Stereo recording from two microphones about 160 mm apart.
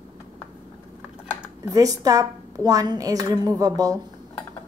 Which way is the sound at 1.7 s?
20° right (ahead or behind).